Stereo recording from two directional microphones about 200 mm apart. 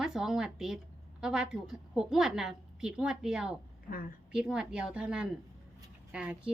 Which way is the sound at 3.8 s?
45° left (ahead or behind).